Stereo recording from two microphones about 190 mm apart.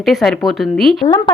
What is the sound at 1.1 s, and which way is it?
Speech, 20° left (ahead or behind).